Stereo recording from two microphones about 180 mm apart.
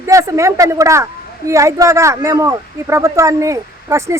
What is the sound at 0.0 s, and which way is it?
Speech, 15° right (ahead or behind).